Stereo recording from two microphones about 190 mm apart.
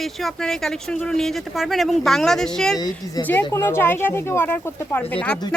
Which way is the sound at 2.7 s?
20° left (ahead or behind).